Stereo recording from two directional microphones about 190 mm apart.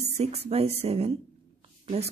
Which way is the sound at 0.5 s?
30° right (ahead or behind).